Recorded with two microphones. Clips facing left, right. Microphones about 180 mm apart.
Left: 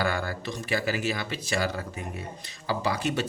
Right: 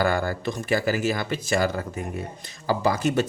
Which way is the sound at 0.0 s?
45° right (ahead or behind).